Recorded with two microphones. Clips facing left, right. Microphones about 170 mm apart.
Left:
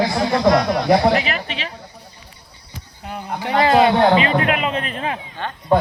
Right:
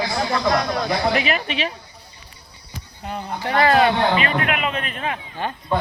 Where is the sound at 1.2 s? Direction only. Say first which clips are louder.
Right 3 dB; 15° right (ahead or behind).